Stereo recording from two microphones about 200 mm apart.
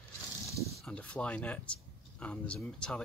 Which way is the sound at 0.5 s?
15° left (ahead or behind).